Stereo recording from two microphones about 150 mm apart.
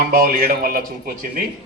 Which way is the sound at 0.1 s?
80° right.